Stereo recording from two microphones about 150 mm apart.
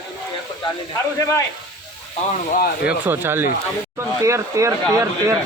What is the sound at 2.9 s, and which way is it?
Speech, 15° right (ahead or behind).